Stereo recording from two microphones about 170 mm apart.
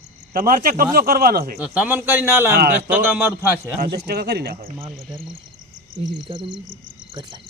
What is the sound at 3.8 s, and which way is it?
Speech, 65° right (ahead or behind).